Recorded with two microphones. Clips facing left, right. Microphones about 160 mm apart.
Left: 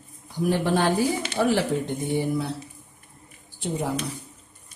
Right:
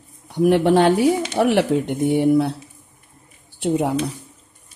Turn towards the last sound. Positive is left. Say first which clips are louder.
# right 8 dB
turn(degrees=-70)  # may be behind; listen again after turning